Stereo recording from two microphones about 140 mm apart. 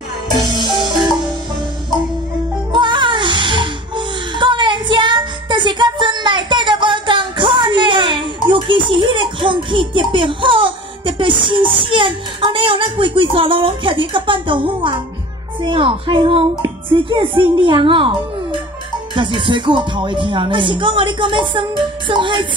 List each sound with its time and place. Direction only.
2.7 s music: 35° right (ahead or behind)
15.6 s speech: 40° right (ahead or behind)